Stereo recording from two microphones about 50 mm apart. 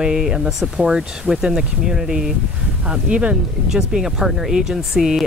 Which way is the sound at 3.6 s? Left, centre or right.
Centre.